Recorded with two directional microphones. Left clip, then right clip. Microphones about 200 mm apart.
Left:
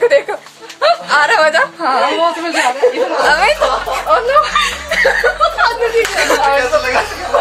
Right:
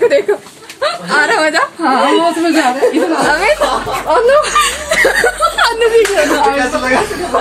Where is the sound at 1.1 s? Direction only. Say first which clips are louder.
Right 2 dB; 15° left (ahead or behind).